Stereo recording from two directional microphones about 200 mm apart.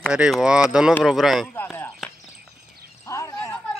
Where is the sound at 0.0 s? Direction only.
Centre (ahead or behind).